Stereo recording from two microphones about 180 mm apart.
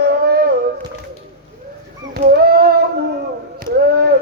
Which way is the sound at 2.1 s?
65° right (ahead or behind).